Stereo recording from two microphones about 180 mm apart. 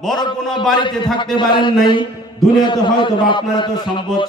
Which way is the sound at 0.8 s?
25° left (ahead or behind).